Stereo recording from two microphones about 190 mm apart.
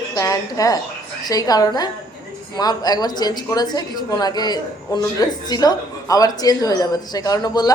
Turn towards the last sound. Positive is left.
turn(degrees=20)  # may be behind; listen again after turning